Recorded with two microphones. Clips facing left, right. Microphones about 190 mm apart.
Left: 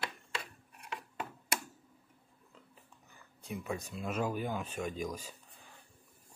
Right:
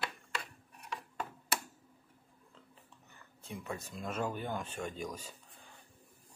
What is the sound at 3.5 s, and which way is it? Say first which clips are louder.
Speech: left 3 dB; 10° left (ahead or behind).